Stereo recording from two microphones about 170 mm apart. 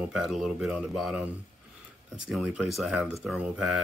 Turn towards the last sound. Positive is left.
turn(degrees=-5)  # may be behind; listen again after turning